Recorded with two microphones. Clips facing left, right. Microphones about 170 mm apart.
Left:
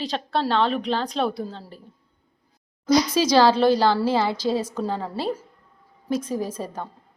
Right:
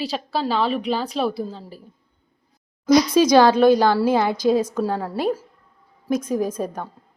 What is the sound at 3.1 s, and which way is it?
Speech, 15° right (ahead or behind).